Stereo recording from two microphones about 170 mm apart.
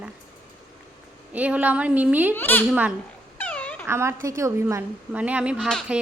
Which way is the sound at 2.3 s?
10° left (ahead or behind).